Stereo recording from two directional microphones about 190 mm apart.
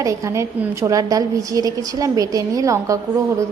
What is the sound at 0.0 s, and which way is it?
A woman's voice, 15° right (ahead or behind).